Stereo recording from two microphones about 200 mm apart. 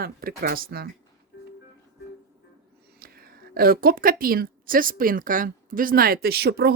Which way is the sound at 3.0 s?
50° right (ahead or behind).